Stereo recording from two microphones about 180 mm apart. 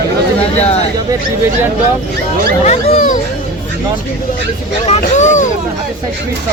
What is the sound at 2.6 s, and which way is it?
Speech, 45° left (ahead or behind).